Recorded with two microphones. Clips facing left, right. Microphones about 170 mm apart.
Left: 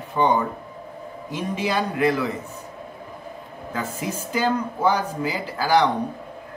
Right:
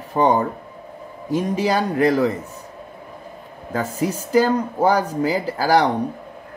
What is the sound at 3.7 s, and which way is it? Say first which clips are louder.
Speech: right 6 dB; 40° right (ahead or behind).